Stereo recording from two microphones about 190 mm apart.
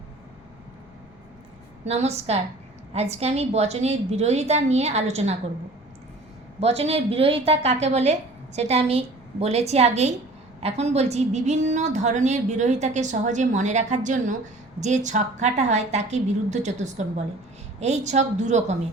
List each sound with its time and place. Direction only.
1.8 s a woman's voice: 35° right (ahead or behind)
6.6 s a woman's voice: 35° right (ahead or behind)